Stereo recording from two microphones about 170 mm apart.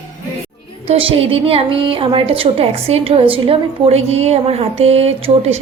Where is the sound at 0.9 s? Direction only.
35° right (ahead or behind).